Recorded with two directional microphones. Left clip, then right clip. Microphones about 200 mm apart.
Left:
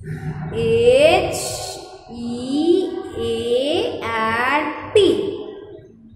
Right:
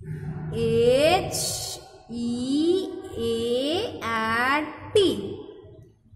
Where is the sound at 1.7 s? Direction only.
35° right (ahead or behind).